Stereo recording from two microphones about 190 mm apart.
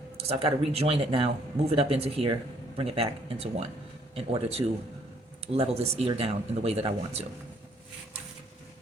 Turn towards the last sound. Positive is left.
turn(degrees=-30)  # may be behind; listen again after turning